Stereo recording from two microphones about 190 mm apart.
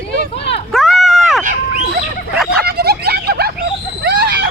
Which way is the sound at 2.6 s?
55° right (ahead or behind).